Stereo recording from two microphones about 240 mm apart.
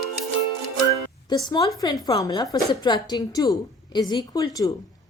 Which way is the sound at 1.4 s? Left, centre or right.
Centre.